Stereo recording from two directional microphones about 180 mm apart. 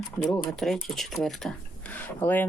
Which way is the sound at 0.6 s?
Centre (ahead or behind).